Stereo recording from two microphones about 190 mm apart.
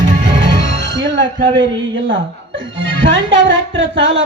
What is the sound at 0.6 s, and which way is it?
Music, 70° right (ahead or behind).